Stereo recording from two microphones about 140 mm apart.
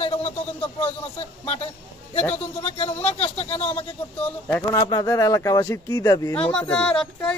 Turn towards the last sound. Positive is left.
turn(degrees=5)  # may be behind; listen again after turning